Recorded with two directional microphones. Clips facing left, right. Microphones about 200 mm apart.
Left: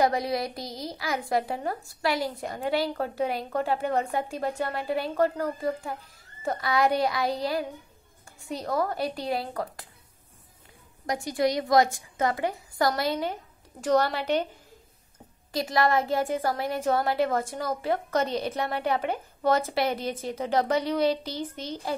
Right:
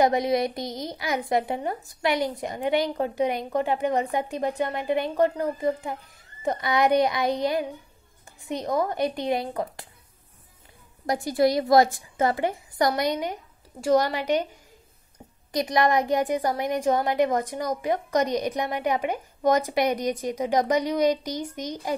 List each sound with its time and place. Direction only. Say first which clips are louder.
0.0 s a woman's voice: right 4 dB; 20° right (ahead or behind)
11.1 s a woman's voice: right 4 dB; 35° right (ahead or behind); by 14.5 s 10° right (ahead or behind)
15.5 s a woman's voice: right 2 dB; 20° right (ahead or behind)